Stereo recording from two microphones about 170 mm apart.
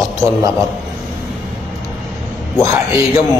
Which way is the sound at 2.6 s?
15° right (ahead or behind).